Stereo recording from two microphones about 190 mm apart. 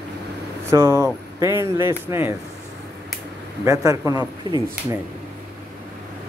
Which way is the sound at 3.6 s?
15° right (ahead or behind).